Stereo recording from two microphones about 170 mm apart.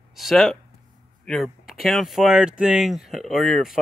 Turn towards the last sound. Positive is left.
turn(degrees=0)  # may be behind; listen again after turning